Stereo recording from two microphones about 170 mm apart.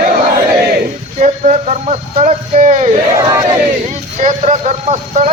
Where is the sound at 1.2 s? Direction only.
45° right (ahead or behind).